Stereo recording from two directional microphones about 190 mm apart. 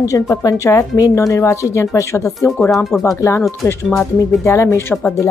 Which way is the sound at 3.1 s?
15° left (ahead or behind).